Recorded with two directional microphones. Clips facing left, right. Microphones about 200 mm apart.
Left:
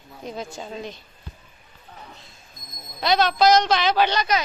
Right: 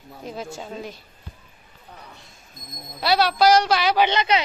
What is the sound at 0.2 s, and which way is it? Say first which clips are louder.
Speech: even; 5° right (ahead or behind).